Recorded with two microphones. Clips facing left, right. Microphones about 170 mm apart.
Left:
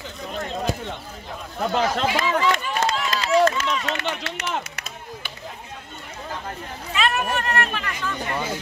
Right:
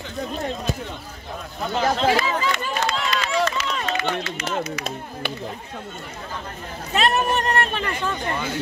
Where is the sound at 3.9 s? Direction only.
70° left (ahead or behind).